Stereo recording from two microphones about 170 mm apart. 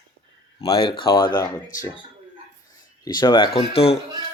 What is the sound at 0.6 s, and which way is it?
Speech, 30° left (ahead or behind).